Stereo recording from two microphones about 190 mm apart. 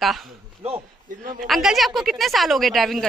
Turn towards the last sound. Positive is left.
turn(degrees=0)  # may be behind; listen again after turning